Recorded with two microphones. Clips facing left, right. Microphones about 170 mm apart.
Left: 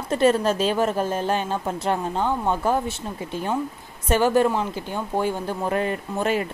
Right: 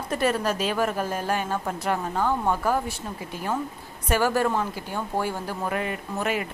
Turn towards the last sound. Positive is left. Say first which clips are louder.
# left 4 dB
turn(degrees=30)  # may be behind; listen again after turning